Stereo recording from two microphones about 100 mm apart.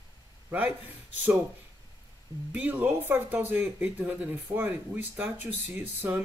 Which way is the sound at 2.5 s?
15° right (ahead or behind).